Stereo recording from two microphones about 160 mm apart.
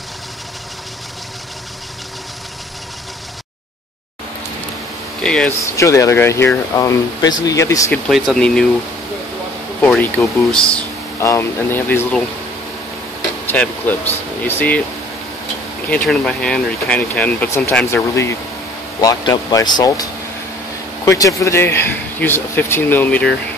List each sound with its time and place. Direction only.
5.2 s speech: 5° left (ahead or behind)
5.7 s speech: 20° left (ahead or behind)
8.1 s speech: centre (ahead or behind)
9.8 s speech: 10° left (ahead or behind)
11.1 s speech: 15° left (ahead or behind)
13.5 s speech: 10° left (ahead or behind)
15.9 s speech: 5° left (ahead or behind)